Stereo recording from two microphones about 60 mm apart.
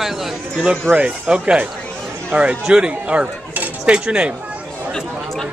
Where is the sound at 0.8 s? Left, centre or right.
Right.